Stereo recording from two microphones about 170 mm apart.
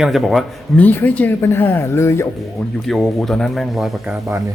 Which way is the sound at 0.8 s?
10° left (ahead or behind).